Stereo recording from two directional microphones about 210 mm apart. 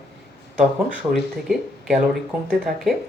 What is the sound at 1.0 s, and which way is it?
Speech, 10° right (ahead or behind).